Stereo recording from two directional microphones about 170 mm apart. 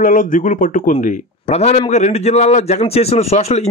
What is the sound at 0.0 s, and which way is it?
Speech, 50° left (ahead or behind).